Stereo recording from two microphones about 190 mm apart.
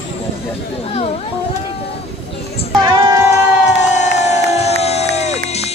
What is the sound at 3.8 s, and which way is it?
Crowd, 40° left (ahead or behind).